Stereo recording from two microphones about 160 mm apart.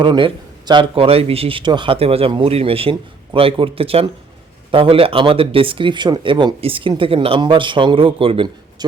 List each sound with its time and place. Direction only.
0.0 s speech: 30° right (ahead or behind)